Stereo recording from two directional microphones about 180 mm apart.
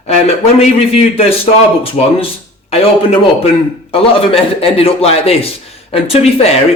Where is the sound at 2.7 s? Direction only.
35° left (ahead or behind).